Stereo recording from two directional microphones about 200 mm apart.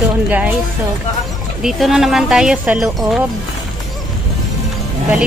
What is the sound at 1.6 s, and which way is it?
Speech, centre (ahead or behind).